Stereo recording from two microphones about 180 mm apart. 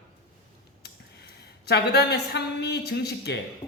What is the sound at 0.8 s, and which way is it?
Speech, 65° left (ahead or behind).